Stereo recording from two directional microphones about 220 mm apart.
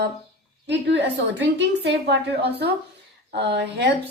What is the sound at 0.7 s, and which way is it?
A woman's voice, 50° right (ahead or behind).